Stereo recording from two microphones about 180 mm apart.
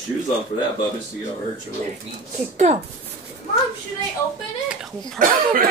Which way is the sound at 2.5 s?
40° right (ahead or behind).